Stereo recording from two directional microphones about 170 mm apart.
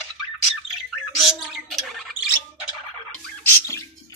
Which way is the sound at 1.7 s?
Centre (ahead or behind).